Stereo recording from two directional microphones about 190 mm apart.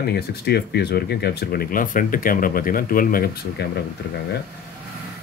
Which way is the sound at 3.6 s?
60° left (ahead or behind).